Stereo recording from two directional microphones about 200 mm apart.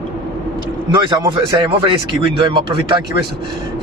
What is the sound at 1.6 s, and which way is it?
Speech, 25° right (ahead or behind).